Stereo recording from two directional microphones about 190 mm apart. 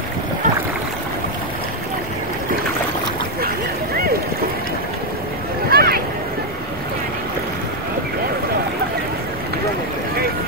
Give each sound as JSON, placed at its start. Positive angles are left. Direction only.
{"t": 5.7, "sound": "boat", "side_deg": -55}